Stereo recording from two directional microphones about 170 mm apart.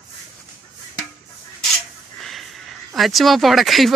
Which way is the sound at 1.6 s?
Centre (ahead or behind).